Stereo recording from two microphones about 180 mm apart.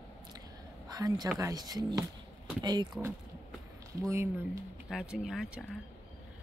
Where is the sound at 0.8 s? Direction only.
20° right (ahead or behind).